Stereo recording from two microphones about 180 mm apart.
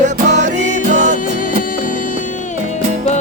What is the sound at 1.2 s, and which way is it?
Music, 50° left (ahead or behind).